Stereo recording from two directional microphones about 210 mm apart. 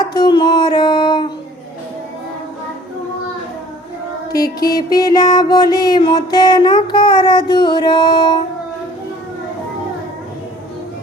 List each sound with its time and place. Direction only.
0.0 s music: 20° left (ahead or behind)
4.6 s music: 20° left (ahead or behind)